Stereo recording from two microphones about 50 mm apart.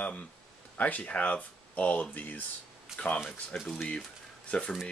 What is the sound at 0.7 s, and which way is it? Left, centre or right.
Speech, left.